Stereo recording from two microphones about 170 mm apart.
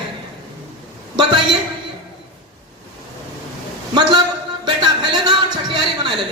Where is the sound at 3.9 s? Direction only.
25° right (ahead or behind).